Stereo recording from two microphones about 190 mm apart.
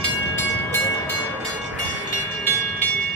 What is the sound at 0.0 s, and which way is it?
Train, 10° left (ahead or behind).